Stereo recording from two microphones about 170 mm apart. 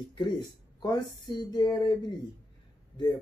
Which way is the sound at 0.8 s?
25° left (ahead or behind).